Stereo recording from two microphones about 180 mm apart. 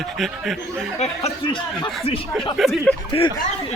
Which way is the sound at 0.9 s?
35° left (ahead or behind).